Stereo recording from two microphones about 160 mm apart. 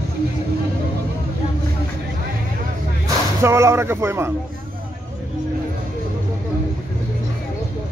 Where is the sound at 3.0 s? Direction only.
15° right (ahead or behind).